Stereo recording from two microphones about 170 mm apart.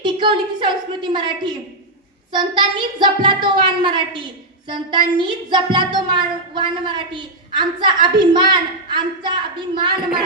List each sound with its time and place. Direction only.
0.0 s speech: 30° right (ahead or behind)
9.9 s speech: 5° right (ahead or behind)